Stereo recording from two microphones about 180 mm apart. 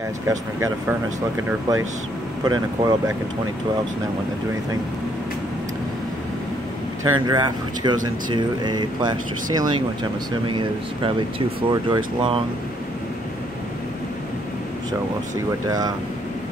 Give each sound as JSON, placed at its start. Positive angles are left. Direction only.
{"t": 0.3, "sound": "speech", "side_deg": -15}
{"t": 2.4, "sound": "speech", "side_deg": -25}
{"t": 7.0, "sound": "speech", "side_deg": -25}
{"t": 11.0, "sound": "speech", "side_deg": -30}